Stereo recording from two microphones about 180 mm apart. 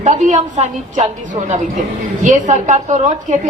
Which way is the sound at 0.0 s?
40° right (ahead or behind).